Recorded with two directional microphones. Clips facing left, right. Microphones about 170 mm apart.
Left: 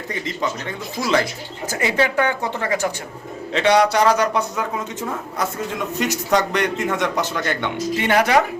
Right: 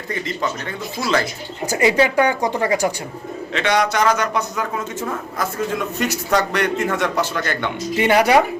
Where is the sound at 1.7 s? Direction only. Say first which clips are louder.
Right 4 dB; 15° right (ahead or behind).